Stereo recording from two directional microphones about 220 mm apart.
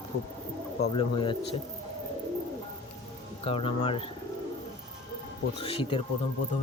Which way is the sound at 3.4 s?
25° left (ahead or behind).